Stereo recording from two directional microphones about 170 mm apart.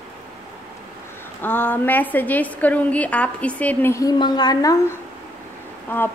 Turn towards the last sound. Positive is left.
turn(degrees=10)  # may be behind; listen again after turning